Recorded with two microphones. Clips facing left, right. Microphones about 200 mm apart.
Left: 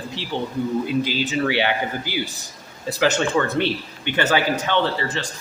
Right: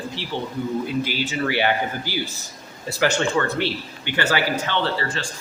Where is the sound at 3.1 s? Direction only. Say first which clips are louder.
Left 2 dB; 20° left (ahead or behind).